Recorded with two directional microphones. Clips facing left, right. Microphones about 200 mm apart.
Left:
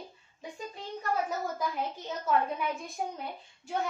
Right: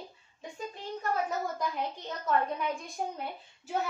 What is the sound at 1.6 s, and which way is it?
A woman's voice, 5° left (ahead or behind).